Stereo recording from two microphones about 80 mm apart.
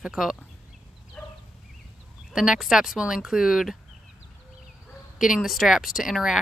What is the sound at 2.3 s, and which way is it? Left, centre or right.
Speech, centre.